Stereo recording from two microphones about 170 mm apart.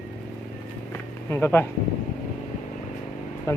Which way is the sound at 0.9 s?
10° left (ahead or behind).